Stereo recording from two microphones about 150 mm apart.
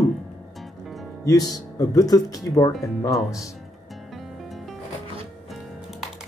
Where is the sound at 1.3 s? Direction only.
25° left (ahead or behind).